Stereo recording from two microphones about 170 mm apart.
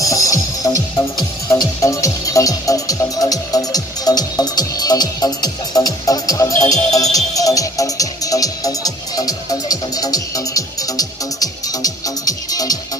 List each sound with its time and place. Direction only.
0.0 s music: 20° left (ahead or behind)